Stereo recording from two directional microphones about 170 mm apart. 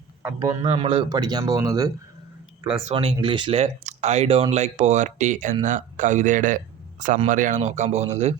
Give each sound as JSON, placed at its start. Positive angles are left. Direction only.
{"t": 0.2, "sound": "a man's voice", "side_deg": -15}
{"t": 0.6, "sound": "speech", "side_deg": -35}
{"t": 2.6, "sound": "speech", "side_deg": -30}